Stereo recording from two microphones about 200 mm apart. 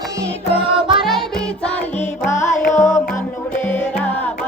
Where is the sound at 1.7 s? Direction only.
35° left (ahead or behind).